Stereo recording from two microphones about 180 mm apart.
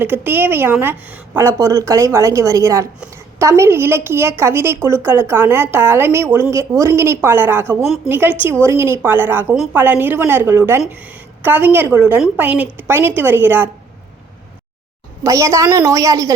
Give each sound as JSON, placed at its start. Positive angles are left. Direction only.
{"t": 0.0, "sound": "a woman's voice", "side_deg": -10}
{"t": 15.2, "sound": "a woman's voice", "side_deg": -15}